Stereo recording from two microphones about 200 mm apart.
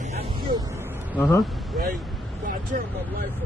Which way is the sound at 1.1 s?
10° left (ahead or behind).